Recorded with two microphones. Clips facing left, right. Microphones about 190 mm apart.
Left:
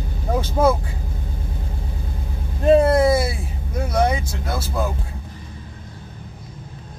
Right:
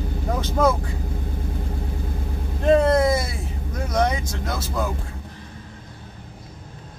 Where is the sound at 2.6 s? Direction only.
10° left (ahead or behind).